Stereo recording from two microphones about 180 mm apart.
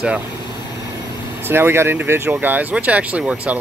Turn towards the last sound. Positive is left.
turn(degrees=-5)  # may be behind; listen again after turning